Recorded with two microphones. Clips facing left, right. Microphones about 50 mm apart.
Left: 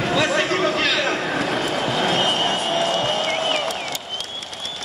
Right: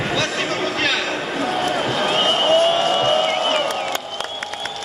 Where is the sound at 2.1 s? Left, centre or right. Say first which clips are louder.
Right 5 dB; right.